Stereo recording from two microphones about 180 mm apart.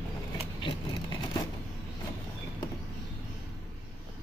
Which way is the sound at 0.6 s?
25° left (ahead or behind).